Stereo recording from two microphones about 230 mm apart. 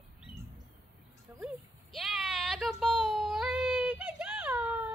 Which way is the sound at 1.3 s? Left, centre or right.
Centre.